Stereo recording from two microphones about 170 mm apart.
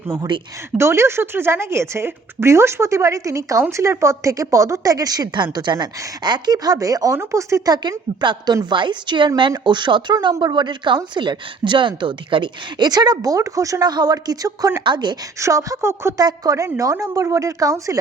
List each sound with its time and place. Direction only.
0.1 s a woman's voice: 25° right (ahead or behind)